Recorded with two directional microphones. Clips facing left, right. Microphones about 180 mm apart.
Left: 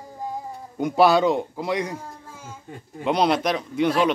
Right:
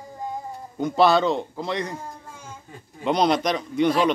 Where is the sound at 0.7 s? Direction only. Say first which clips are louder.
Left 1 dB; 10° left (ahead or behind).